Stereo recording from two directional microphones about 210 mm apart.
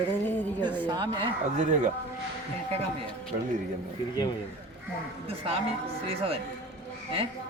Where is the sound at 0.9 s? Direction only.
20° right (ahead or behind).